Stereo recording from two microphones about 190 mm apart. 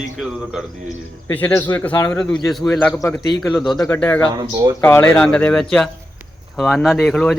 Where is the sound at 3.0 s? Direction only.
15° left (ahead or behind).